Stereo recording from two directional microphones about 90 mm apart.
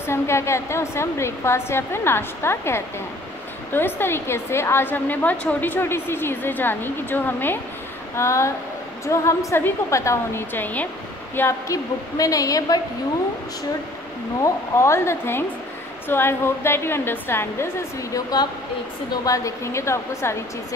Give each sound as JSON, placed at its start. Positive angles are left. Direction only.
{"t": 0.0, "sound": "a woman's voice", "side_deg": 30}
{"t": 8.2, "sound": "a woman's voice", "side_deg": 30}
{"t": 10.5, "sound": "a woman's voice", "side_deg": 20}
{"t": 11.3, "sound": "a woman's voice", "side_deg": 30}
{"t": 14.4, "sound": "a woman's voice", "side_deg": 30}